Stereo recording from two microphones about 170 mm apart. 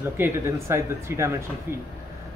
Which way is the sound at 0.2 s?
15° right (ahead or behind).